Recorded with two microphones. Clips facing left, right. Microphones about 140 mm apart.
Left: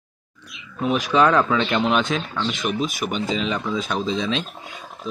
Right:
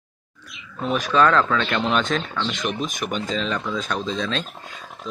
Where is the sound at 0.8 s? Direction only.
15° left (ahead or behind).